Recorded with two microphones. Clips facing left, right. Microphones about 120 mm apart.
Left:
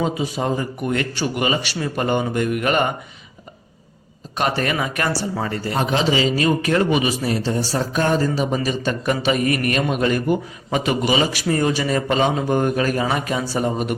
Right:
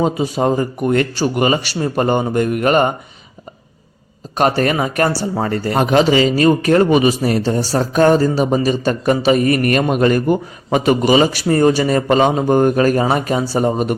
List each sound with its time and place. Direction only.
0.0 s a man's voice: 40° right (ahead or behind)
4.4 s a man's voice: 40° right (ahead or behind)
5.5 s a man's voice: 50° right (ahead or behind)